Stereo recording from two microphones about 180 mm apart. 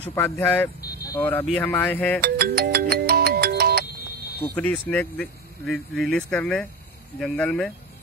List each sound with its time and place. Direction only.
0.1 s speech: 10° left (ahead or behind)
0.7 s vehicle: 60° left (ahead or behind)
1.0 s speech: 10° left (ahead or behind)
2.2 s ringtone: 60° right (ahead or behind)
4.4 s speech: 10° left (ahead or behind)